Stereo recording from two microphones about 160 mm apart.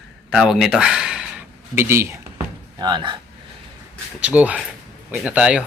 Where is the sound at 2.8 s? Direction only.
30° right (ahead or behind).